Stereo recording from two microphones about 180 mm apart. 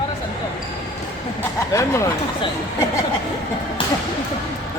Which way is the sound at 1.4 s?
15° left (ahead or behind).